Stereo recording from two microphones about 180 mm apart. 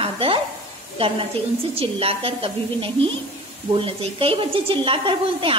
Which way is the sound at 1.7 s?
30° right (ahead or behind).